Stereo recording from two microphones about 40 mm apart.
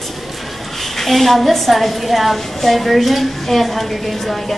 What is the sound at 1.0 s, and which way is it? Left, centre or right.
A woman's voice, centre.